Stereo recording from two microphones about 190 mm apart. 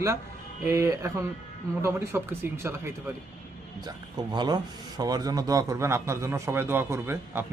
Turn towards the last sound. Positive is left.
turn(degrees=-10)  # may be behind; listen again after turning